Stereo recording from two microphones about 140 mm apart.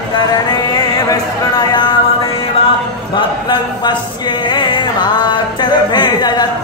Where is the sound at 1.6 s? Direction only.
30° left (ahead or behind).